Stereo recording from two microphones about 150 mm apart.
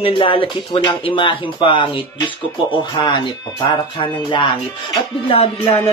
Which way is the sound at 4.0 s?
35° left (ahead or behind).